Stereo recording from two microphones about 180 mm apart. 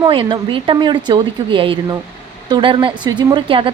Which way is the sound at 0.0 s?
25° right (ahead or behind).